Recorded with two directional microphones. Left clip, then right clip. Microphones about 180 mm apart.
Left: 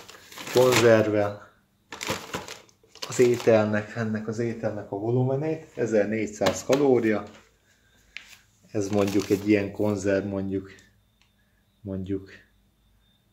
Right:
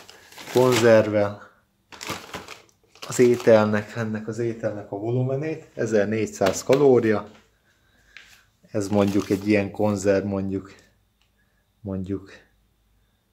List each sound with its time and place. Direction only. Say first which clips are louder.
0.4 s crumpling: left 2 dB; 15° left (ahead or behind)
0.8 s speech: right 3 dB; 40° right (ahead or behind)
1.9 s a sound: left 2 dB; 20° left (ahead or behind)
3.1 s speech: right 3 dB; 40° right (ahead or behind)
4.1 s speech: right 2 dB; 25° right (ahead or behind); by 7.2 s 45° right (ahead or behind)
8.7 s speech: right 2 dB; 35° right (ahead or behind)
11.8 s speech: right 1 dB; 40° right (ahead or behind)